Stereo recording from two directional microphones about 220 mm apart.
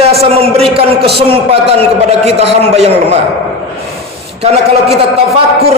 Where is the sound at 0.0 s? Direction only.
25° right (ahead or behind).